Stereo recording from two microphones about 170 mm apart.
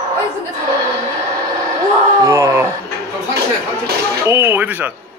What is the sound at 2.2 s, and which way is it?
Speech, 15° right (ahead or behind).